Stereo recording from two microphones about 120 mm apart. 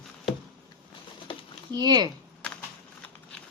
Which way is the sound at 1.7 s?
35° right (ahead or behind).